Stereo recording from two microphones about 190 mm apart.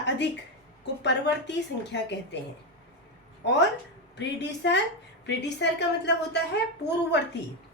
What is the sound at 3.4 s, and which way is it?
A woman's voice, 65° left (ahead or behind).